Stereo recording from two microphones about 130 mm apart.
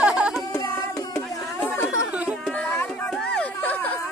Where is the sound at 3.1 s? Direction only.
5° left (ahead or behind).